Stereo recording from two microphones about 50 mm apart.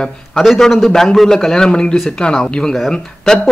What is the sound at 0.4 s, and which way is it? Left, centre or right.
A man's voice, centre.